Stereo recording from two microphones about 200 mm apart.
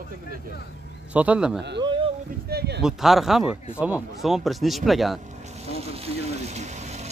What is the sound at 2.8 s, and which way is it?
Speech, centre (ahead or behind).